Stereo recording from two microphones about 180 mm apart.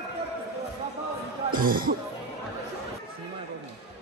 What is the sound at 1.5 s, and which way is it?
Speech, 50° right (ahead or behind).